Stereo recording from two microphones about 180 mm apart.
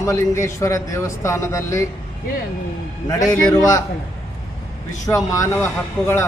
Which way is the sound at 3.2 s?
20° left (ahead or behind).